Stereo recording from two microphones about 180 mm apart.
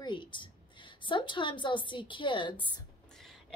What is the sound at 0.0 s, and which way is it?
A woman's voice, 25° left (ahead or behind).